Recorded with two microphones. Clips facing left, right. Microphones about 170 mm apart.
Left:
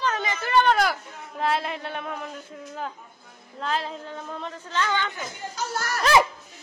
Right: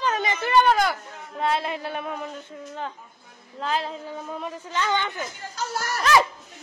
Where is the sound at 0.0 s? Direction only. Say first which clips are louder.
Right 2 dB; 15° right (ahead or behind).